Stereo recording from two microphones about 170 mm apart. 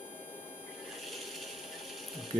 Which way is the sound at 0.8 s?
Centre (ahead or behind).